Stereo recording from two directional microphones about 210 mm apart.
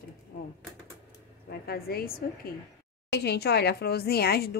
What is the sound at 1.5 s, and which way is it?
A woman's voice, 45° left (ahead or behind).